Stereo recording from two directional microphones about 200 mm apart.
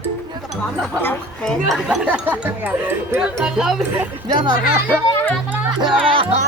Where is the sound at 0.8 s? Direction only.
5° left (ahead or behind).